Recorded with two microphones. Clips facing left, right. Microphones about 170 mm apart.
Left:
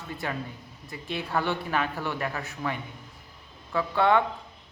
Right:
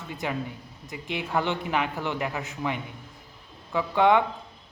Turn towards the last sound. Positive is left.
turn(degrees=-15)  # may be behind; listen again after turning